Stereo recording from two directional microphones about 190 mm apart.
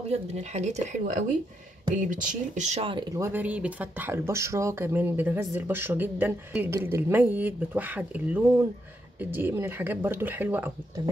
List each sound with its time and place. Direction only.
0.1 s speech: 35° right (ahead or behind)
3.2 s speech: 10° right (ahead or behind)